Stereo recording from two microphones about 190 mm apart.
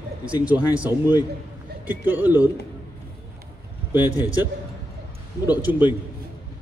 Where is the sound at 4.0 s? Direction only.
10° right (ahead or behind).